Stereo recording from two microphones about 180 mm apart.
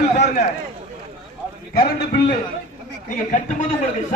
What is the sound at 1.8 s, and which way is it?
Speech, 60° left (ahead or behind).